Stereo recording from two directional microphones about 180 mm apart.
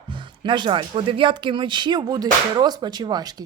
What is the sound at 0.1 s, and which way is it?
Speech, 25° right (ahead or behind).